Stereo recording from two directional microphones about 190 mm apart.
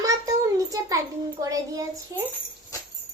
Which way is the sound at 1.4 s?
20° right (ahead or behind).